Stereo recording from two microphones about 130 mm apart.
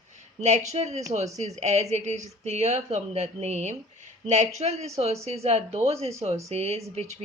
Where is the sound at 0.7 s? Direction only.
55° right (ahead or behind).